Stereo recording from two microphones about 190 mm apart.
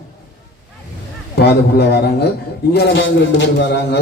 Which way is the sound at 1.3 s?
60° left (ahead or behind).